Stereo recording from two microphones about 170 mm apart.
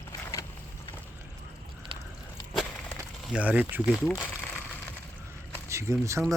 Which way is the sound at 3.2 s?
5° right (ahead or behind).